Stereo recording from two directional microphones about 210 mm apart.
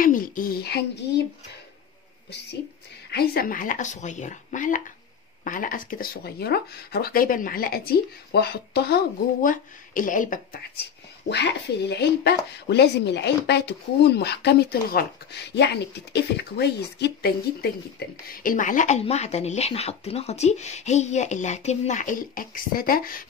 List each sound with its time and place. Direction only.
0.0 s speech: 40° left (ahead or behind)
3.1 s speech: 50° left (ahead or behind)
11.2 s speech: 55° left (ahead or behind)